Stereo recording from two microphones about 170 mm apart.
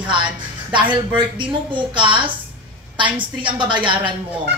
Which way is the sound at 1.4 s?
30° right (ahead or behind).